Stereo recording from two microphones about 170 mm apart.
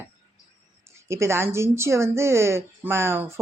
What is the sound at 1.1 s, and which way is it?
Speech, 15° right (ahead or behind).